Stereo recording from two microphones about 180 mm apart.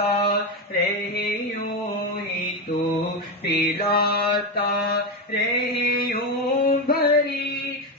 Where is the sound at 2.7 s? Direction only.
50° left (ahead or behind).